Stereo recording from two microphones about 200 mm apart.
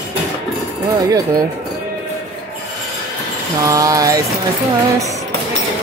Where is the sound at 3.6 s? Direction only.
15° right (ahead or behind).